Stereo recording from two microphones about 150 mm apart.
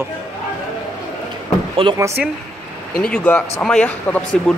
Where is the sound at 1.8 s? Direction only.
35° right (ahead or behind).